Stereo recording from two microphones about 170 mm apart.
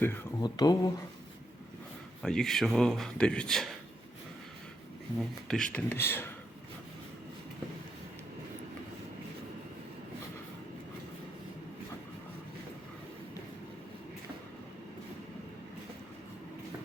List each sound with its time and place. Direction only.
0.0 s a sound: 10° left (ahead or behind)
0.4 s speech: 25° left (ahead or behind)
2.2 s speech: centre (ahead or behind)
5.5 s speech: 5° left (ahead or behind)